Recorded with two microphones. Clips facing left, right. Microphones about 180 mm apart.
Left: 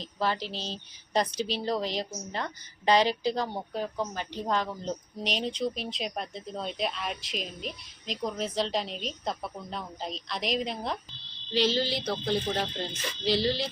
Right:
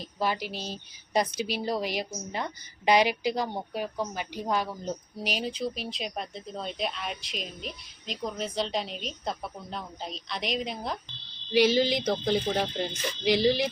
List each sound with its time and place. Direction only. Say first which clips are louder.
0.0 s a woman's voice: even; 10° right (ahead or behind)
11.5 s speech: right 4 dB; 15° right (ahead or behind)